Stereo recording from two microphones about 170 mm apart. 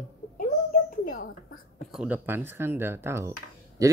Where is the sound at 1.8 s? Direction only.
Centre (ahead or behind).